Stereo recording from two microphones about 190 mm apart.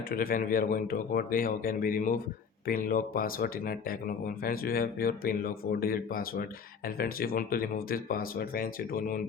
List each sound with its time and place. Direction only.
0.1 s speech: 50° left (ahead or behind)